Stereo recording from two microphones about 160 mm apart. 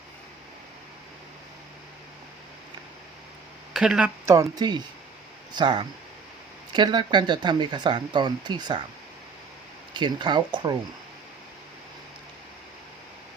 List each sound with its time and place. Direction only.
3.7 s speech: 5° right (ahead or behind)
4.3 s speech: 25° right (ahead or behind)
9.9 s speech: 30° right (ahead or behind)